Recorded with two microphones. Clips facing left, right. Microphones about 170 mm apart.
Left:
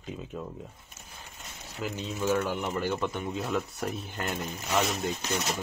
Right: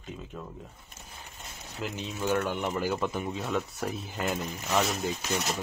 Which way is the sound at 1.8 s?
5° left (ahead or behind).